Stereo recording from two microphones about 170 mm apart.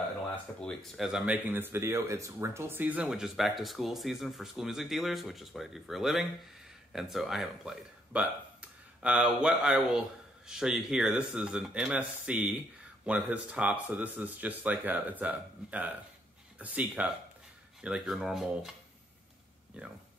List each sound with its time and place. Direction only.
0.6 s speech: centre (ahead or behind)